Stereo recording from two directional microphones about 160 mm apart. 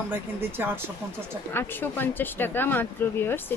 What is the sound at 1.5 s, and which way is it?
Speech, 15° left (ahead or behind).